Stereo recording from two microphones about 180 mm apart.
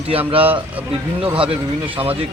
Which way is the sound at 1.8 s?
30° right (ahead or behind).